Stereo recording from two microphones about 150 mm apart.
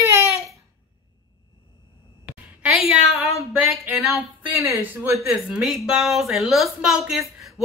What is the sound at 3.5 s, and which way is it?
Speech, 10° right (ahead or behind).